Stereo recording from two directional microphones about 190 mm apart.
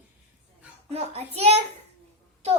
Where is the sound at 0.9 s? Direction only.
35° right (ahead or behind).